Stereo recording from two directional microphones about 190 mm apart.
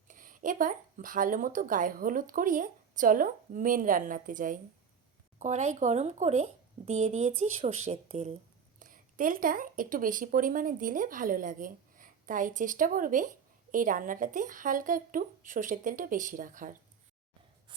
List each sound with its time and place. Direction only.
0.1 s speech: 45° right (ahead or behind)
8.8 s speech: 45° right (ahead or behind)